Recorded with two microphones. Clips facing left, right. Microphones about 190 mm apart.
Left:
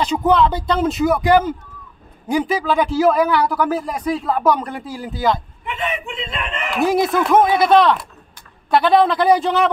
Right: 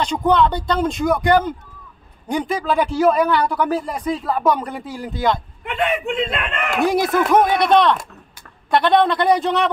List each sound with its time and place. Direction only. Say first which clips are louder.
0.0 s a man's voice: left 1 dB; 5° left (ahead or behind)
5.6 s speech: right 4 dB; 55° right (ahead or behind)
6.9 s a man's voice: left 1 dB; centre (ahead or behind)